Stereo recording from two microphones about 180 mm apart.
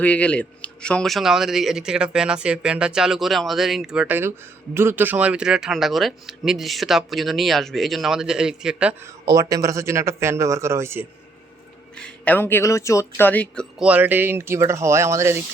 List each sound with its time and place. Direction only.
0.0 s speech: 5° left (ahead or behind)
9.2 s speech: 20° right (ahead or behind)
11.9 s speech: 5° left (ahead or behind)
13.7 s speech: 5° right (ahead or behind)